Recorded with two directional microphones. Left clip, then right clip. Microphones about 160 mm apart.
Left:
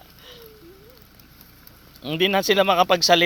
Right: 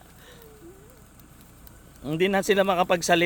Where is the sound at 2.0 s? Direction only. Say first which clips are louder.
Left 3 dB; 15° right (ahead or behind).